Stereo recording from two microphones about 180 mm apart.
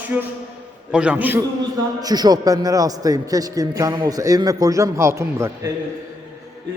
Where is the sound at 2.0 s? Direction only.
20° right (ahead or behind).